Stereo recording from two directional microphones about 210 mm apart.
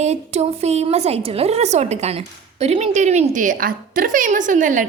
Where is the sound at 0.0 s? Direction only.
30° right (ahead or behind).